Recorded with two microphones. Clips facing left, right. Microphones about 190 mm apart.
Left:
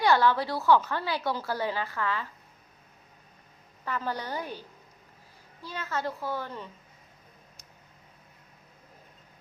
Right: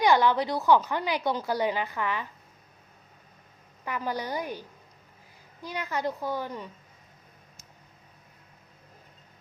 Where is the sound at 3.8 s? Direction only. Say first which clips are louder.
Right 1 dB; 15° right (ahead or behind).